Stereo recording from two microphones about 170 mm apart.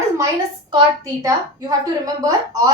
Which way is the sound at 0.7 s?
25° right (ahead or behind).